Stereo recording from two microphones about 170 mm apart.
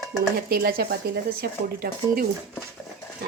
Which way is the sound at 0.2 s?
65° right (ahead or behind).